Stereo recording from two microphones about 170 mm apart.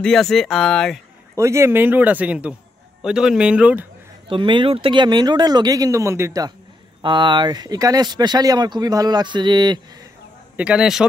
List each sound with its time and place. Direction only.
0.0 s speech: centre (ahead or behind)
1.3 s speech: 15° right (ahead or behind)
4.3 s speech: 30° right (ahead or behind)
10.5 s a man's voice: 5° right (ahead or behind)